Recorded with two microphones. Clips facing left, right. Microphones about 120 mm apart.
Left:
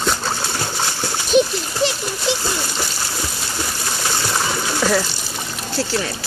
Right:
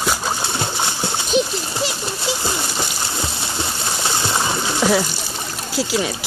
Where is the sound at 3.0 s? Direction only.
25° right (ahead or behind).